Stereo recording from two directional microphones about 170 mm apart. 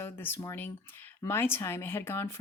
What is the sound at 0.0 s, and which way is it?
Speech, 15° left (ahead or behind).